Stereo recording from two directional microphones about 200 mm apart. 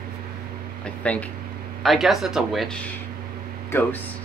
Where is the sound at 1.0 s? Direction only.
5° left (ahead or behind).